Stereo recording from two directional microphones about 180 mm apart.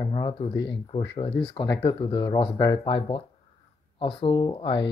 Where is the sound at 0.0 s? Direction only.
25° left (ahead or behind).